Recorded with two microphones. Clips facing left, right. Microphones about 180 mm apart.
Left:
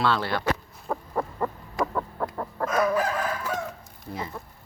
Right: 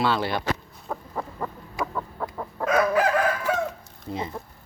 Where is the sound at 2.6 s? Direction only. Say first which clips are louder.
Right 3 dB; 75° right (ahead or behind).